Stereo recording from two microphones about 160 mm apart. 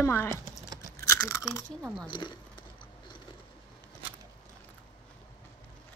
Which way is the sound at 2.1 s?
30° left (ahead or behind).